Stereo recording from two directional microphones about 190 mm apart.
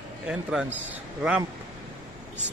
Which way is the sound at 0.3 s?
5° right (ahead or behind).